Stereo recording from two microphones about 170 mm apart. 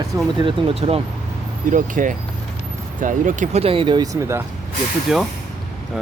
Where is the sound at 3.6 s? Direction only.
30° right (ahead or behind).